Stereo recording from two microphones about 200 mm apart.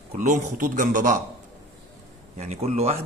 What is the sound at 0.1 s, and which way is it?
A man's voice, 40° right (ahead or behind).